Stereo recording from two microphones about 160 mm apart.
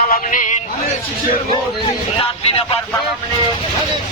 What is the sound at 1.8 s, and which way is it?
Speech, 35° left (ahead or behind).